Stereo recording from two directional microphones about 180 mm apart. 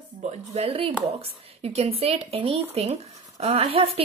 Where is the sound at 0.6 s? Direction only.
30° right (ahead or behind).